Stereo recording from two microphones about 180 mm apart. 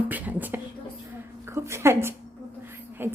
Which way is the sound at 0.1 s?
10° right (ahead or behind).